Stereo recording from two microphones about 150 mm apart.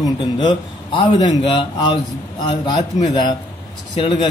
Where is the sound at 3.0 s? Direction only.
30° left (ahead or behind).